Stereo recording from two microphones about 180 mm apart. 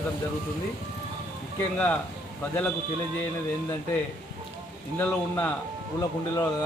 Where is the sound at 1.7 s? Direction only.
10° left (ahead or behind).